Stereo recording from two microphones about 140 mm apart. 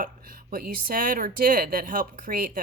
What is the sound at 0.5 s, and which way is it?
Speech, 90° right.